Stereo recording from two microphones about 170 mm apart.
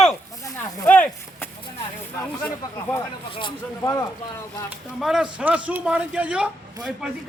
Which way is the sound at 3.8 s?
20° left (ahead or behind).